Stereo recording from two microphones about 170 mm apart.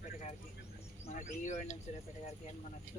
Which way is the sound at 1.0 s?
45° left (ahead or behind).